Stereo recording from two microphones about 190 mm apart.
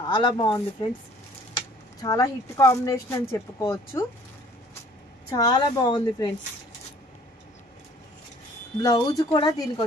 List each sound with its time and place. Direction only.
0.1 s speech: 25° left (ahead or behind)
2.0 s speech: 15° left (ahead or behind)
5.3 s speech: 20° left (ahead or behind)
8.8 s speech: 15° left (ahead or behind)